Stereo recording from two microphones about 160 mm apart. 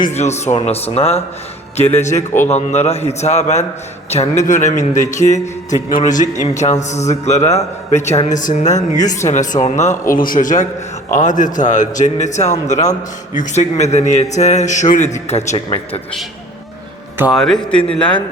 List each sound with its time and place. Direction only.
0.0 s a man's voice: 45° left (ahead or behind)
10.1 s a man's voice: 60° left (ahead or behind); by 15.6 s 40° left (ahead or behind)
17.3 s speech: centre (ahead or behind)